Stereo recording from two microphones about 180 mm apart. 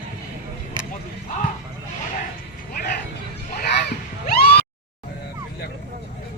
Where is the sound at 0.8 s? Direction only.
25° right (ahead or behind).